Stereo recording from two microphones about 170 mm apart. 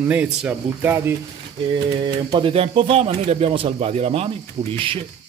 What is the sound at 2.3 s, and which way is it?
Speech, 30° right (ahead or behind).